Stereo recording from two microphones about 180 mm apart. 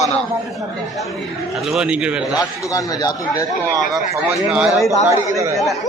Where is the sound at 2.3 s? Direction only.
20° left (ahead or behind).